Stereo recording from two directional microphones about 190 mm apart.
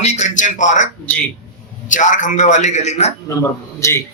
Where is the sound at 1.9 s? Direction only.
40° left (ahead or behind).